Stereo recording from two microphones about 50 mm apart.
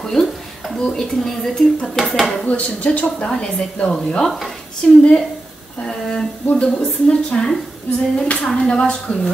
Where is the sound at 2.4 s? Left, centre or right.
Left.